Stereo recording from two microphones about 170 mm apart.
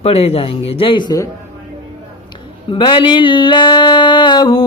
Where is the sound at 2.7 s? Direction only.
30° left (ahead or behind).